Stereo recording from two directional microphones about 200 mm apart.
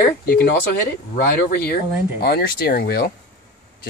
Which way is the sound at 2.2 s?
50° left (ahead or behind).